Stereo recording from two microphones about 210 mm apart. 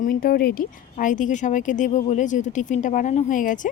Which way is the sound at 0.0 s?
40° left (ahead or behind).